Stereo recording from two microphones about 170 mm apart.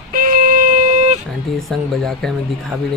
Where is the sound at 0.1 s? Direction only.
55° right (ahead or behind).